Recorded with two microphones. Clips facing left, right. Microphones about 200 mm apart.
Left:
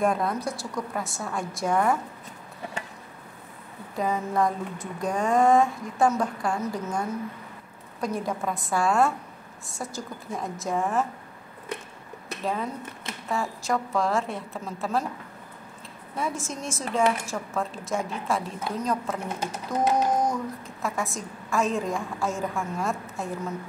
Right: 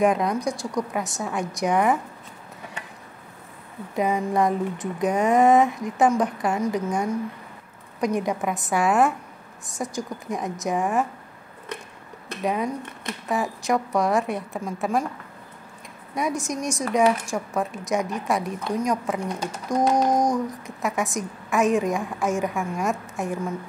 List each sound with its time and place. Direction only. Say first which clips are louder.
0.0 s a woman's voice: right 4 dB; 15° right (ahead or behind)
3.9 s a woman's voice: right 4 dB; 20° right (ahead or behind)
12.4 s a woman's voice: right 4 dB; 15° right (ahead or behind)
16.2 s a woman's voice: right 5 dB; 15° right (ahead or behind)